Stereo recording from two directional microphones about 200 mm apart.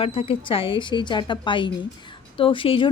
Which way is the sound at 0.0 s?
30° left (ahead or behind).